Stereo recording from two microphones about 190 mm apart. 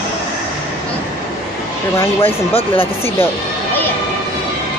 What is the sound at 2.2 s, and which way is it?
Speech, 30° left (ahead or behind).